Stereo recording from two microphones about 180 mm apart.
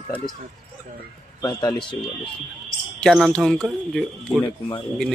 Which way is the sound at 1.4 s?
20° left (ahead or behind).